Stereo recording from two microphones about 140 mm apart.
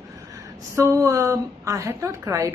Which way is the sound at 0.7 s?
20° right (ahead or behind).